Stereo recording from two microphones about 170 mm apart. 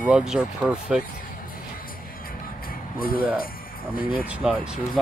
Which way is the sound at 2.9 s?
60° left (ahead or behind).